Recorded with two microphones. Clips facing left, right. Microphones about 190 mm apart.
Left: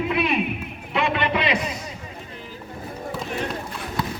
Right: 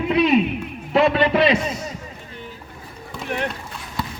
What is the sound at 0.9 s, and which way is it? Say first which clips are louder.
Speech: right 7 dB; 40° right (ahead or behind).